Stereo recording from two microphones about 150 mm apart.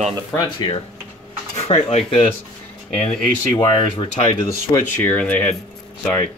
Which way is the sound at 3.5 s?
35° left (ahead or behind).